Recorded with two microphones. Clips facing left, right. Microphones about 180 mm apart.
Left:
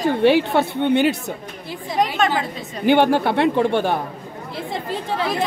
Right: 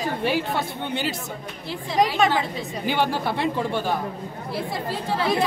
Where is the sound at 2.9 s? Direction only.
60° left (ahead or behind).